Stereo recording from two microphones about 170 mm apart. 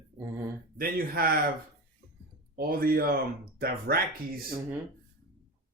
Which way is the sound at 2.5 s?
60° right (ahead or behind).